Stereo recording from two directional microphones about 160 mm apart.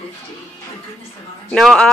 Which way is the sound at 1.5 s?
5° left (ahead or behind).